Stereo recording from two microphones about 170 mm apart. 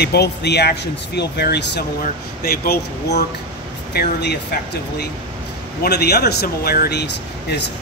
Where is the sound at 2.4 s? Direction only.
65° left (ahead or behind).